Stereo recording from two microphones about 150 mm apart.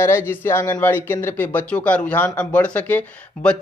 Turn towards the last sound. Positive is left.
turn(degrees=10)  # may be behind; listen again after turning